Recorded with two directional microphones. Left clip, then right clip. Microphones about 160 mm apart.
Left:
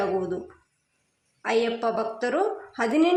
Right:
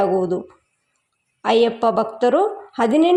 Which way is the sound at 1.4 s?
40° right (ahead or behind).